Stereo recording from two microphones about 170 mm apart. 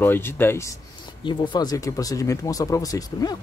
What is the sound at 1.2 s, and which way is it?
Speech, 30° left (ahead or behind).